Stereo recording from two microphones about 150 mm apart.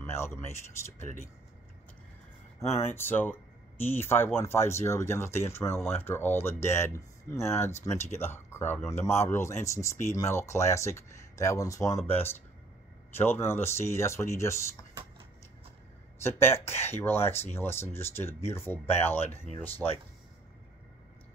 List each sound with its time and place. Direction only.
0.1 s speech: 15° left (ahead or behind)
2.7 s speech: 15° left (ahead or behind)
16.2 s speech: 15° left (ahead or behind)